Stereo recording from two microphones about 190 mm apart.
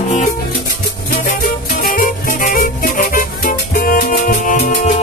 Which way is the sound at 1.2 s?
50° left (ahead or behind).